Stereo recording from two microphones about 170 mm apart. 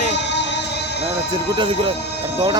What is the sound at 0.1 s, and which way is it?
Music, 90° left.